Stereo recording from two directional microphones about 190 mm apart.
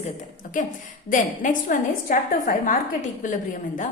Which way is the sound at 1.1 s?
45° left (ahead or behind).